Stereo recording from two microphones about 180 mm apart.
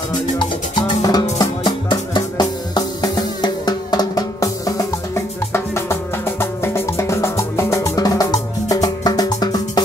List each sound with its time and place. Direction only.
0.4 s music: 20° left (ahead or behind)